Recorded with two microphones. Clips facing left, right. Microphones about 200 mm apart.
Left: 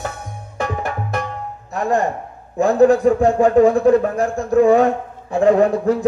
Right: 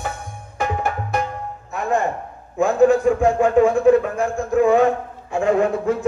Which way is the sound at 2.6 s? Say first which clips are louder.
Left 2 dB; 35° left (ahead or behind).